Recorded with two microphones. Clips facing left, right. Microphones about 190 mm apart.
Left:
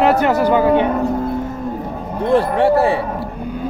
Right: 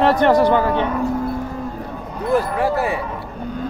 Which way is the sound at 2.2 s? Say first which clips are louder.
Left 4 dB; 30° left (ahead or behind).